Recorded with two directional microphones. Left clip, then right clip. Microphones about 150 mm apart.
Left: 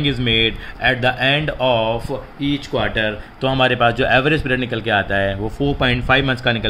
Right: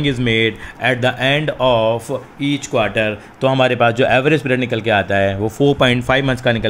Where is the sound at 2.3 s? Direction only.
45° right (ahead or behind).